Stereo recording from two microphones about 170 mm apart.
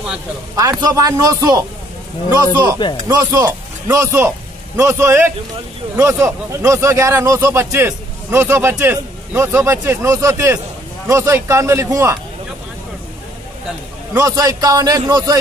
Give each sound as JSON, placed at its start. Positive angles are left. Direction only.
{"t": 0.6, "sound": "speech", "side_deg": -20}
{"t": 3.1, "sound": "speech", "side_deg": -20}
{"t": 14.1, "sound": "speech", "side_deg": -20}